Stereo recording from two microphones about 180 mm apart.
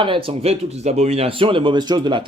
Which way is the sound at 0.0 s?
30° right (ahead or behind).